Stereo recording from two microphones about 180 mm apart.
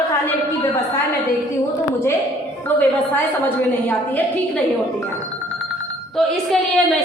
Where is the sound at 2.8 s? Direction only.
10° left (ahead or behind).